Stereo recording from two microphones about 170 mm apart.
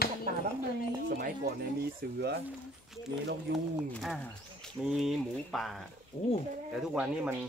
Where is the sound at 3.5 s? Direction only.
75° right (ahead or behind).